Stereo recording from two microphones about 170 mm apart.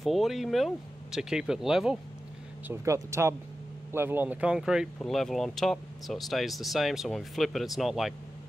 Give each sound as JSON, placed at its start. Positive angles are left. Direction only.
{"t": 0.0, "sound": "speech", "side_deg": 0}
{"t": 2.7, "sound": "speech", "side_deg": -15}